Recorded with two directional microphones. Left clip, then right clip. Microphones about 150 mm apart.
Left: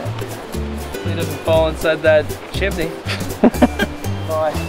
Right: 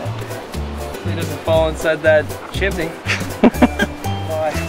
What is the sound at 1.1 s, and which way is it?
Speech, centre (ahead or behind).